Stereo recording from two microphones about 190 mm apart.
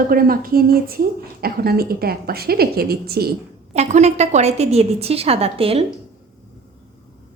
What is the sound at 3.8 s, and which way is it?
Speech, 35° right (ahead or behind).